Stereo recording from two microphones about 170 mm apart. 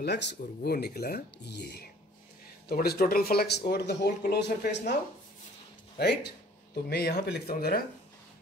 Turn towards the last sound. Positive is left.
turn(degrees=65)  # may be behind; listen again after turning